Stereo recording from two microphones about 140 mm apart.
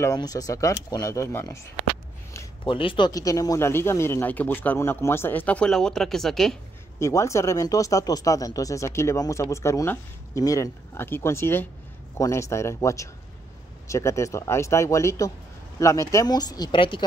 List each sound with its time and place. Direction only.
0.0 s speech: 25° left (ahead or behind)
2.6 s speech: 40° left (ahead or behind)
3.1 s speech: 25° left (ahead or behind); by 6.5 s 5° left (ahead or behind)
7.0 s speech: 20° left (ahead or behind)